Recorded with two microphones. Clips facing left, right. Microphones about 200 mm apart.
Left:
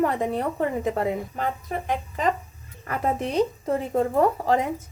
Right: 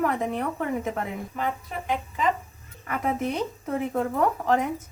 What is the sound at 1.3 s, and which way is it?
Speech, 45° left (ahead or behind).